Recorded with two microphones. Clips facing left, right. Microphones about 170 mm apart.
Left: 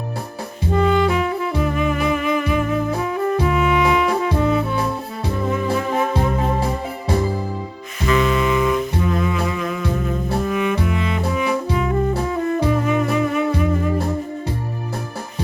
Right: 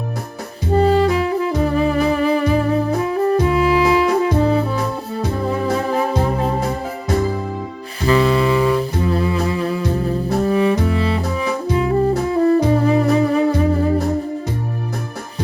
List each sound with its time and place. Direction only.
0.7 s music: 35° right (ahead or behind)
5.9 s music: 35° right (ahead or behind)
8.0 s music: 35° right (ahead or behind)